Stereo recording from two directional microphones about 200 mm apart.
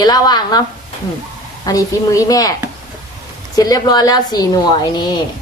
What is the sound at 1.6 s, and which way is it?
Speech, 15° left (ahead or behind).